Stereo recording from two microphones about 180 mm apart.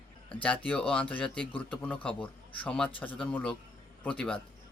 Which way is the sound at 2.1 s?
30° left (ahead or behind).